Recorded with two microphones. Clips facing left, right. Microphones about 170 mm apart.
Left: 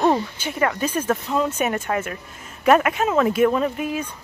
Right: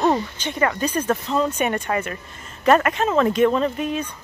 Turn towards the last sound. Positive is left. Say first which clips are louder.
# right 1 dB
turn(degrees=10)  # may be behind; listen again after turning